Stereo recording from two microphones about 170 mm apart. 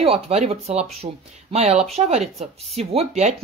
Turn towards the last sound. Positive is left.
turn(degrees=-40)  # may be behind; listen again after turning